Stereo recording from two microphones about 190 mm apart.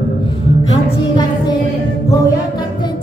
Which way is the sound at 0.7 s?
20° left (ahead or behind).